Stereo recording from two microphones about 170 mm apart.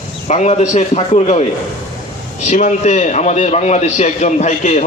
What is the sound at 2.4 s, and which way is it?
A man's voice, 45° left (ahead or behind).